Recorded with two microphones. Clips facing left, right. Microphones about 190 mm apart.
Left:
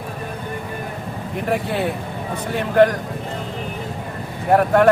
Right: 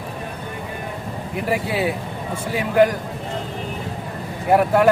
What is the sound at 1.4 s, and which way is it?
Speech, 5° right (ahead or behind).